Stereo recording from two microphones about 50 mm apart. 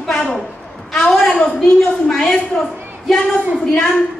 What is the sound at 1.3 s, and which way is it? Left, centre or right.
A woman's voice, centre.